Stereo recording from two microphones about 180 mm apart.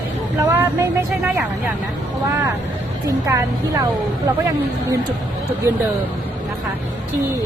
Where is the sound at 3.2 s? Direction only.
15° right (ahead or behind).